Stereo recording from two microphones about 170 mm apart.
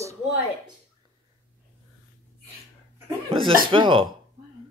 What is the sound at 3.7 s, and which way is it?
Speech, 30° right (ahead or behind).